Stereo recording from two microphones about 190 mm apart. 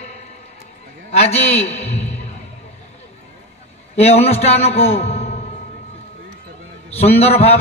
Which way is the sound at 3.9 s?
35° left (ahead or behind).